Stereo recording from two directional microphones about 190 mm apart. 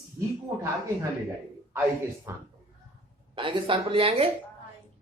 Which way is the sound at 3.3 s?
25° right (ahead or behind).